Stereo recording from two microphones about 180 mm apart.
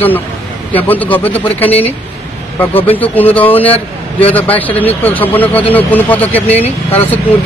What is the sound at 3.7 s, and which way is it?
Speech, 30° left (ahead or behind).